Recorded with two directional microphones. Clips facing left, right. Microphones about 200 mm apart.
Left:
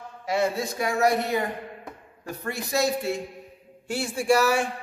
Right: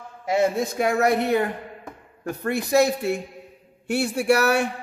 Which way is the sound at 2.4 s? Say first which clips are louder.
Right 6 dB; 60° right (ahead or behind).